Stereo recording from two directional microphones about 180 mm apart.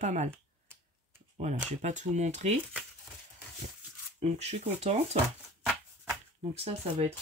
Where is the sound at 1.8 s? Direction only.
40° right (ahead or behind).